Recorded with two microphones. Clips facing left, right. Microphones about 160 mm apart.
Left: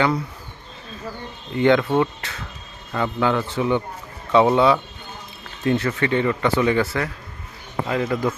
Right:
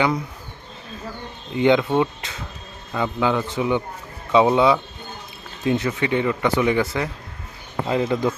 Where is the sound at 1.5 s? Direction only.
15° right (ahead or behind).